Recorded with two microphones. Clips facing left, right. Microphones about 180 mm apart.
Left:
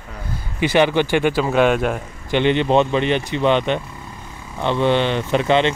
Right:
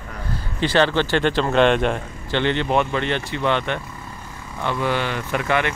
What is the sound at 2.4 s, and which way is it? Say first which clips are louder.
Speech: left 5 dB; 15° left (ahead or behind).